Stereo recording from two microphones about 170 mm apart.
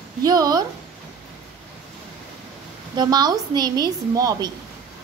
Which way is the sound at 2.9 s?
25° right (ahead or behind).